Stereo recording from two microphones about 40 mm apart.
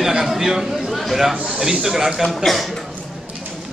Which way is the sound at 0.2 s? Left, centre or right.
Centre.